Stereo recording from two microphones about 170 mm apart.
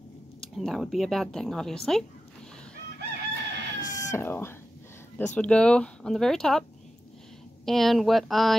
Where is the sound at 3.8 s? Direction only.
45° left (ahead or behind).